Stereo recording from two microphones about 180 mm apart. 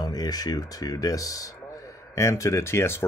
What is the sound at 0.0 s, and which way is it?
Speech, 20° left (ahead or behind).